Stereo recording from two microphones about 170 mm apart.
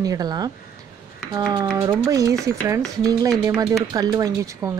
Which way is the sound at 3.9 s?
25° right (ahead or behind).